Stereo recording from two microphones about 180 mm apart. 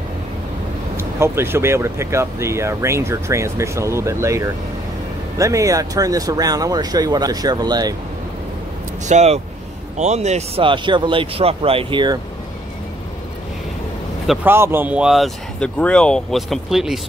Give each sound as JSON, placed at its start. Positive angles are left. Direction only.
{"t": 0.9, "sound": "speech", "side_deg": -15}
{"t": 9.0, "sound": "speech", "side_deg": -40}
{"t": 14.2, "sound": "a man's voice", "side_deg": 0}
{"t": 14.5, "sound": "speech", "side_deg": -15}